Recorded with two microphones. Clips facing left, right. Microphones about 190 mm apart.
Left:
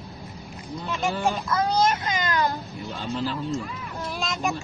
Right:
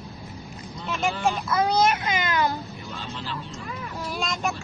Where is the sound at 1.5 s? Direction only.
10° right (ahead or behind).